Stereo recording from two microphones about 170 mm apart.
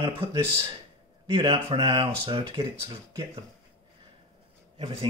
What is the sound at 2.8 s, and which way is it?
Speech, 15° right (ahead or behind).